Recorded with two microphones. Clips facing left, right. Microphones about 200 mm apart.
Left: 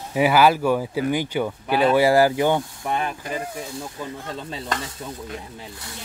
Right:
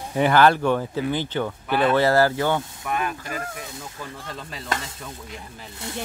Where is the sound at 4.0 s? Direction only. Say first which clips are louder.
Left 2 dB; 25° left (ahead or behind).